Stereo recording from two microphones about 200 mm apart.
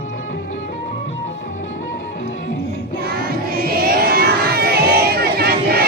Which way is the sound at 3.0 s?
50° right (ahead or behind).